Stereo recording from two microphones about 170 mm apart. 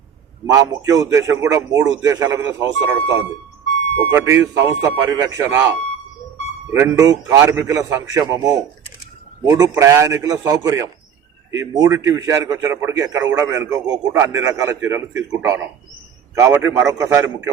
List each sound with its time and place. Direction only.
0.5 s a man's voice: 20° right (ahead or behind)
6.7 s a man's voice: 15° right (ahead or behind)